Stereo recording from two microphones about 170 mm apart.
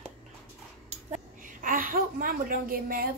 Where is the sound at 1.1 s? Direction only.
50° right (ahead or behind).